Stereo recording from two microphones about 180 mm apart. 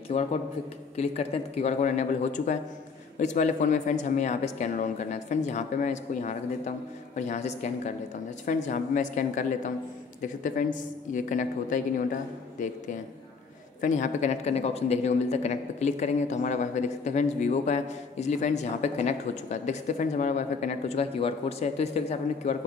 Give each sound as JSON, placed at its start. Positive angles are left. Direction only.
{"t": 0.1, "sound": "speech", "side_deg": 40}